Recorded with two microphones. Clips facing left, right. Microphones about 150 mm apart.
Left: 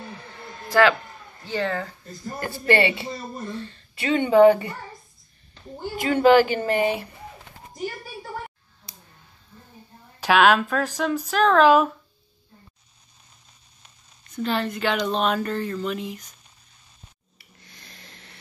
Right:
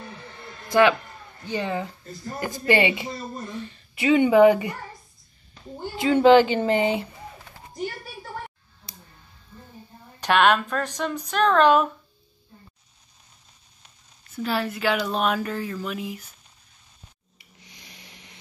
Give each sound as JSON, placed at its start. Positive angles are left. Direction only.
{"t": 0.7, "sound": "speech", "side_deg": -20}
{"t": 5.9, "sound": "speech", "side_deg": -20}
{"t": 10.2, "sound": "speech", "side_deg": 5}
{"t": 14.3, "sound": "speech", "side_deg": -5}
{"t": 17.4, "sound": "a sound", "side_deg": -15}